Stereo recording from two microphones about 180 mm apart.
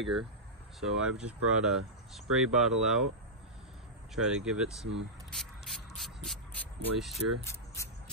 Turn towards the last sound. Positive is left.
turn(degrees=15)  # may be behind; listen again after turning